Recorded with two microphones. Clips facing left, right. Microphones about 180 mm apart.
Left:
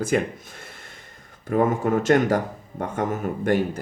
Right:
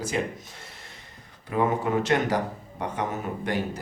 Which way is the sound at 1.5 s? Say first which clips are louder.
Left 4 dB; 45° left (ahead or behind).